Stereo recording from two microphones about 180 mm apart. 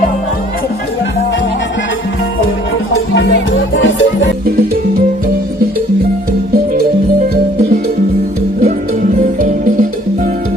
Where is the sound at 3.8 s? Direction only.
90° left.